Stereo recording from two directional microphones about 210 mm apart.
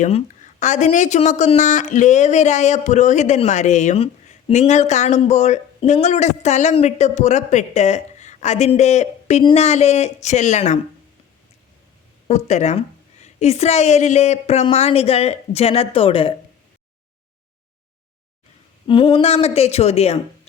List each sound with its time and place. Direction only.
0.0 s speech: 35° left (ahead or behind)
12.3 s a woman's voice: 35° left (ahead or behind)
18.9 s a woman's voice: 25° left (ahead or behind)